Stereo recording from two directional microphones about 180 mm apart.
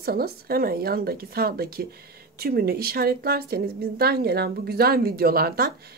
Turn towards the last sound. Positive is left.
turn(degrees=-60)  # may be behind; listen again after turning